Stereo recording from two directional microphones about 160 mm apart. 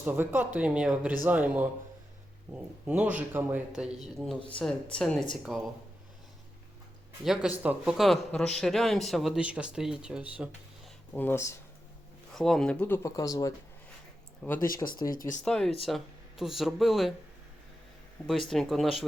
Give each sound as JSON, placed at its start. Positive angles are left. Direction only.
{"t": 0.0, "sound": "a man's voice", "side_deg": -10}
{"t": 2.8, "sound": "a man's voice", "side_deg": -10}
{"t": 7.3, "sound": "speech", "side_deg": -5}
{"t": 11.1, "sound": "speech", "side_deg": 10}
{"t": 12.3, "sound": "speech", "side_deg": 0}
{"t": 15.1, "sound": "speech", "side_deg": 60}
{"t": 15.4, "sound": "speech", "side_deg": 5}
{"t": 18.3, "sound": "speech", "side_deg": 0}